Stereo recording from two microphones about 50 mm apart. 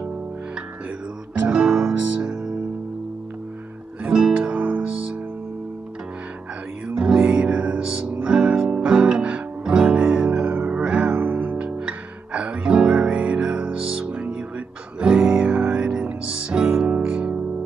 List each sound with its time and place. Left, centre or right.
1.7 s music: centre
4.0 s music: centre
7.0 s music: centre
10.4 s music: right
11.5 s music: right